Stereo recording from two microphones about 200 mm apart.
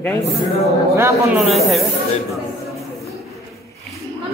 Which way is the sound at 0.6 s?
15° right (ahead or behind).